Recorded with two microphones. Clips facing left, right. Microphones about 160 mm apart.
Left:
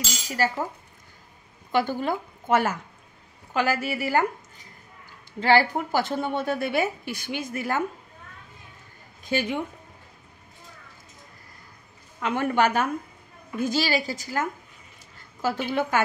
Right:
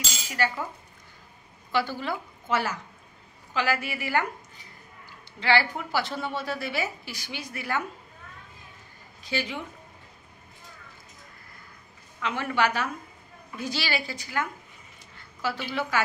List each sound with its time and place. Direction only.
0.3 s speech: 40° left (ahead or behind)
1.7 s a woman's voice: 50° left (ahead or behind)
5.4 s a woman's voice: 45° left (ahead or behind)
9.2 s a woman's voice: 50° left (ahead or behind)
12.2 s a woman's voice: 50° left (ahead or behind)